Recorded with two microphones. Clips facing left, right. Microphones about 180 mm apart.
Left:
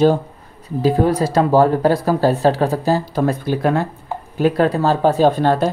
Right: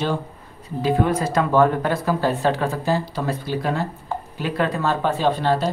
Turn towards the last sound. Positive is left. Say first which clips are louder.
# left 6 dB
turn(degrees=50)  # may be behind; listen again after turning